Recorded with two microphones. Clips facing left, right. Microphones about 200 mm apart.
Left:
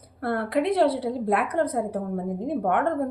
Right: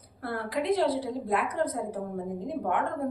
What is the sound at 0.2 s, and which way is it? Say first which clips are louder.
A woman's voice: left 7 dB; 60° left (ahead or behind).